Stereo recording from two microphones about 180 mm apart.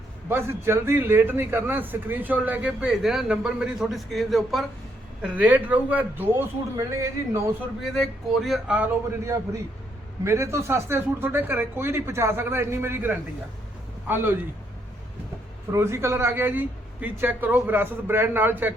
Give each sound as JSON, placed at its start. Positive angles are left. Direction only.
{"t": 0.3, "sound": "a man's voice", "side_deg": -15}
{"t": 7.9, "sound": "a man's voice", "side_deg": 0}
{"t": 15.7, "sound": "a man's voice", "side_deg": -15}